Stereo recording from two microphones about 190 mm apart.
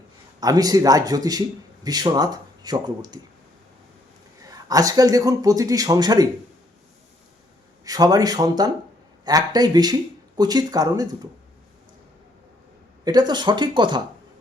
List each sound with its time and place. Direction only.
0.3 s speech: 20° right (ahead or behind)
4.7 s speech: 20° right (ahead or behind)
7.9 s speech: 20° right (ahead or behind)
13.1 s speech: 20° right (ahead or behind)